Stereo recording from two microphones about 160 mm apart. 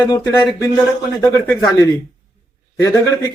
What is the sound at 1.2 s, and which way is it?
Speech, 20° left (ahead or behind).